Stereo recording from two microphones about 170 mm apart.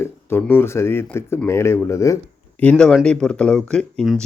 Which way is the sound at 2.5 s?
5° left (ahead or behind).